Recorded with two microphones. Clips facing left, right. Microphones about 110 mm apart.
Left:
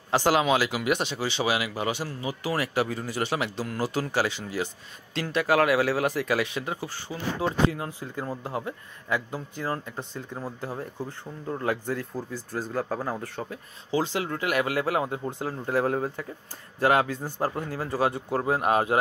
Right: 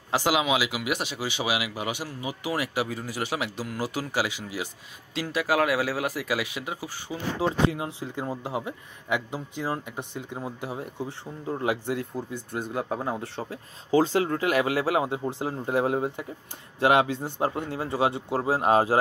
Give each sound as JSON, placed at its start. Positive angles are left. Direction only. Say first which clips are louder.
{"t": 0.1, "sound": "speech", "louder": "left 2 dB", "side_deg": -5}
{"t": 13.9, "sound": "speech", "louder": "right 5 dB", "side_deg": -45}